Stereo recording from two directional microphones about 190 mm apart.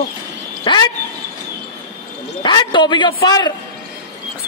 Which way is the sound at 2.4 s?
25° left (ahead or behind).